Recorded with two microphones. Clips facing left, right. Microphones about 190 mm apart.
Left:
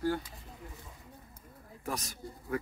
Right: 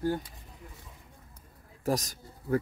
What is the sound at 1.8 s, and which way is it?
Speech, 40° right (ahead or behind).